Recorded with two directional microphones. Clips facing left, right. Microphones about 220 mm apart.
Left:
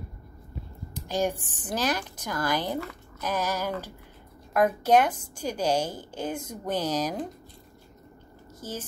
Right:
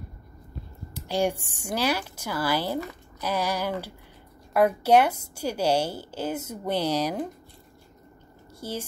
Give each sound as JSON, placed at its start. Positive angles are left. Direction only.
{"t": 0.9, "sound": "a woman's voice", "side_deg": -10}
{"t": 8.5, "sound": "speech", "side_deg": -10}